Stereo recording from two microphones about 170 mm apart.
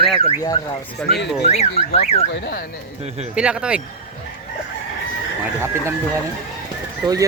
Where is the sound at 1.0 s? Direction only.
75° left (ahead or behind).